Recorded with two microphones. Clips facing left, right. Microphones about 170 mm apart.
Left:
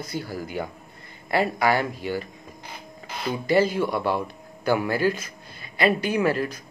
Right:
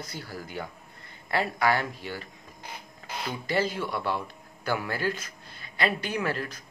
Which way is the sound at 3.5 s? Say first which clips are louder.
Left 8 dB; 10° left (ahead or behind).